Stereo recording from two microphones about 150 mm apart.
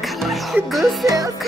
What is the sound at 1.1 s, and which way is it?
Music, 25° right (ahead or behind).